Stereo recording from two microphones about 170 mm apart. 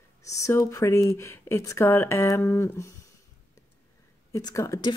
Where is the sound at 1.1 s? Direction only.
15° left (ahead or behind).